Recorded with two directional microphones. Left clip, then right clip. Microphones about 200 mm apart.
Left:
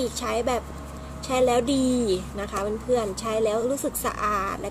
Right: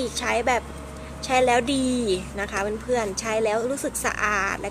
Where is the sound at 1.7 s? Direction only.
25° right (ahead or behind).